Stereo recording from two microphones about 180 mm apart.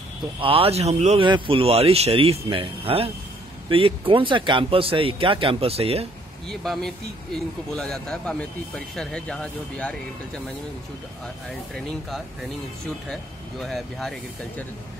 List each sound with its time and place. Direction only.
0.4 s speech: 30° right (ahead or behind)
6.5 s speech: centre (ahead or behind)
12.8 s speech: centre (ahead or behind)